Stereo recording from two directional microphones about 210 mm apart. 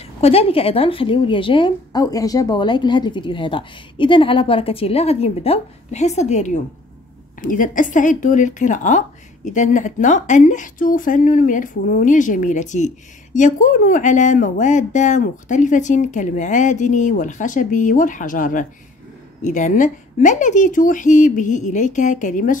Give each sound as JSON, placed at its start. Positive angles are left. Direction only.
{"t": 0.0, "sound": "speech", "side_deg": 30}